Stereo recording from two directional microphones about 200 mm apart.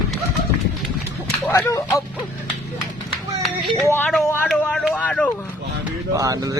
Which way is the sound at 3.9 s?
10° left (ahead or behind).